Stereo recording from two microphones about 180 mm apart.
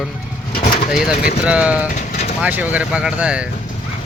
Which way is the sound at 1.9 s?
45° left (ahead or behind).